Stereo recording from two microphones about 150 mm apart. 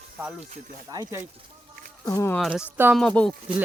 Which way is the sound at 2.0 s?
20° left (ahead or behind).